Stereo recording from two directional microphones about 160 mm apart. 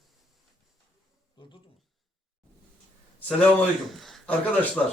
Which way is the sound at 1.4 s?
30° left (ahead or behind).